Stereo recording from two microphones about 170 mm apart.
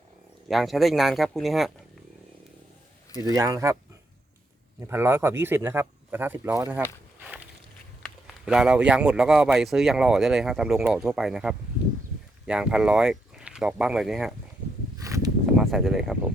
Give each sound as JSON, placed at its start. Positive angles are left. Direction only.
{"t": 0.4, "sound": "speech", "side_deg": 0}
{"t": 3.2, "sound": "speech", "side_deg": -20}
{"t": 4.9, "sound": "speech", "side_deg": -15}
{"t": 8.0, "sound": "speech", "side_deg": -5}
{"t": 14.9, "sound": "a sound", "side_deg": -20}
{"t": 15.4, "sound": "speech", "side_deg": 0}